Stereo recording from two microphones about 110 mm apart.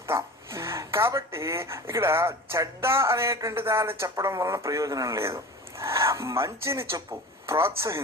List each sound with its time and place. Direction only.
0.1 s speech: 25° right (ahead or behind)